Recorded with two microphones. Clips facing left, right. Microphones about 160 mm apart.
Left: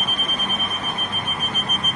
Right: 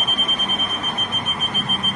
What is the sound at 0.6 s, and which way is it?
Smoke detector, 25° left (ahead or behind).